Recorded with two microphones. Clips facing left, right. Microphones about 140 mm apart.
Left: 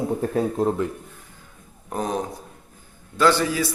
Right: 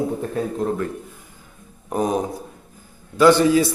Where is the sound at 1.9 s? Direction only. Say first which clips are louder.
Right 5 dB; 10° right (ahead or behind).